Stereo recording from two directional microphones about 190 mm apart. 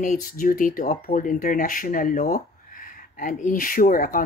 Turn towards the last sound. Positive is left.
turn(degrees=45)  # may be behind; listen again after turning